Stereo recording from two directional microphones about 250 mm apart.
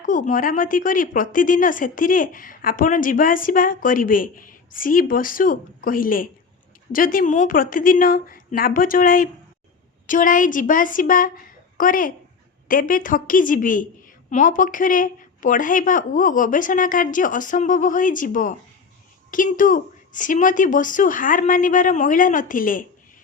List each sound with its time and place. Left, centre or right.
0.0 s speech: left